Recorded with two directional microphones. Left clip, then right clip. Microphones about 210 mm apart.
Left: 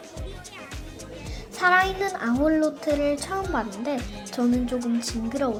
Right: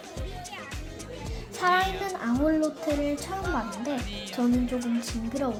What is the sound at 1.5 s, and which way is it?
Speech, 15° left (ahead or behind).